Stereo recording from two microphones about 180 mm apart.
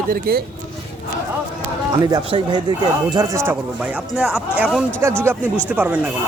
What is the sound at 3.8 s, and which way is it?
Speech, 5° right (ahead or behind).